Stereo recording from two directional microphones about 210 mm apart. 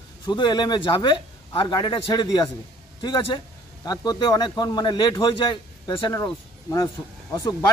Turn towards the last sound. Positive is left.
turn(degrees=20)  # may be behind; listen again after turning